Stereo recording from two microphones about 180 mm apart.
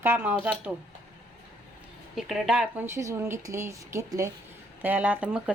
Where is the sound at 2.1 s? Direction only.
5° right (ahead or behind).